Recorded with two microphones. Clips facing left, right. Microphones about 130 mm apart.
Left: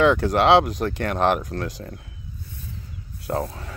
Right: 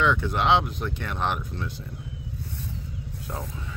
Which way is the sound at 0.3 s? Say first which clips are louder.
Left 6 dB; 90° left.